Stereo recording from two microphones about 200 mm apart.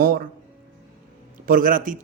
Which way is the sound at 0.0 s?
45° right (ahead or behind).